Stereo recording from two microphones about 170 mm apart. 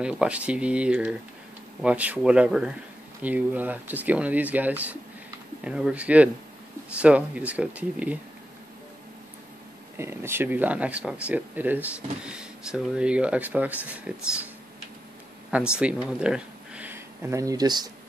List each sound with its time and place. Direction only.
0.0 s speech: 5° right (ahead or behind)
9.9 s speech: 15° right (ahead or behind)
15.5 s speech: 5° right (ahead or behind); by 17.9 s 25° right (ahead or behind)